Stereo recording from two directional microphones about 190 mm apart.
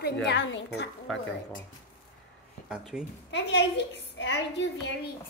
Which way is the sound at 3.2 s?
65° left (ahead or behind).